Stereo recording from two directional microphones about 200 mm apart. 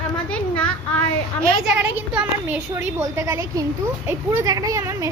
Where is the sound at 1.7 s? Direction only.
5° right (ahead or behind).